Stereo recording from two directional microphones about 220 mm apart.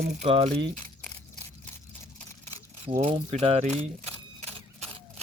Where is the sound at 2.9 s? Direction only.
25° right (ahead or behind).